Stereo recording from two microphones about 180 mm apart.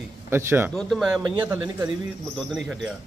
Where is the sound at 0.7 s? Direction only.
Centre (ahead or behind).